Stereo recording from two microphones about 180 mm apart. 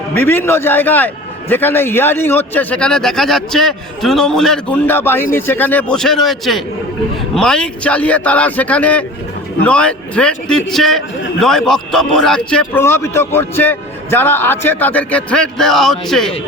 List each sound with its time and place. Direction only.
0.1 s a man's voice: 10° left (ahead or behind)